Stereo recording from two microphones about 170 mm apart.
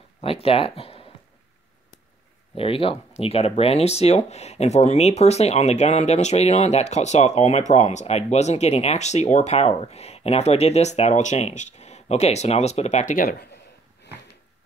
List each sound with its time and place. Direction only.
0.2 s speech: 35° left (ahead or behind)
2.5 s speech: 35° left (ahead or behind); by 13.5 s 55° left (ahead or behind)